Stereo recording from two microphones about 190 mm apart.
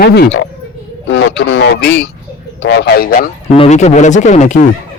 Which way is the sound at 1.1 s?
70° left (ahead or behind).